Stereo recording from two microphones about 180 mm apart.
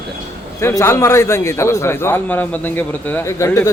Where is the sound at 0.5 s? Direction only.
15° left (ahead or behind).